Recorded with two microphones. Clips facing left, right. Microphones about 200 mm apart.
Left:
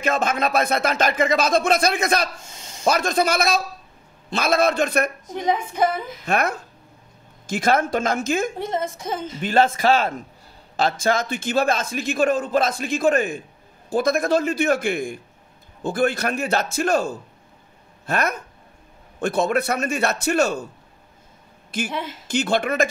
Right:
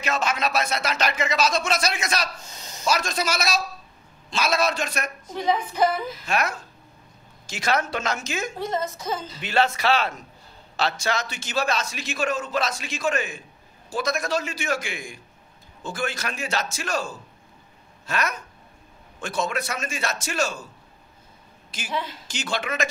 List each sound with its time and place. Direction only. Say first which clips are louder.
0.0 s a man's voice: left 4 dB; 50° left (ahead or behind)
5.3 s a woman's voice: right 2 dB; 20° left (ahead or behind)
6.2 s a man's voice: left 6 dB; 55° left (ahead or behind)
21.7 s a man's voice: left 4 dB; 55° left (ahead or behind)